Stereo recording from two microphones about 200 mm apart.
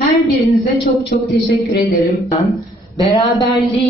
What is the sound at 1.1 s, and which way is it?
Speech, 45° left (ahead or behind).